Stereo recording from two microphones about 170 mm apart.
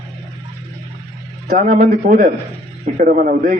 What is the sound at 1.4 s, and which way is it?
A man's voice, 50° right (ahead or behind).